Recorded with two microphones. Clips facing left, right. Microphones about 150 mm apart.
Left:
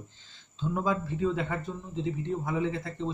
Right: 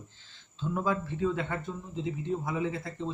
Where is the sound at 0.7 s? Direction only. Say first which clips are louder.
Left 1 dB; 10° left (ahead or behind).